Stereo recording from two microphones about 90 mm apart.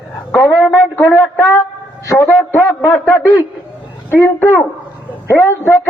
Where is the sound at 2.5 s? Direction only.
25° left (ahead or behind).